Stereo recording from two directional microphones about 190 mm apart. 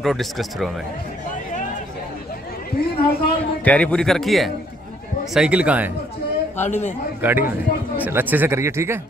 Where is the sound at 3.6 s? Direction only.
5° left (ahead or behind).